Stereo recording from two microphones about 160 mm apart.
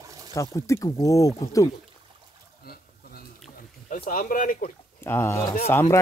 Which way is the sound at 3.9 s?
60° left (ahead or behind).